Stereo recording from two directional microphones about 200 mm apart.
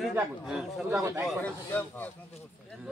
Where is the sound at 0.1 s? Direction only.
Centre (ahead or behind).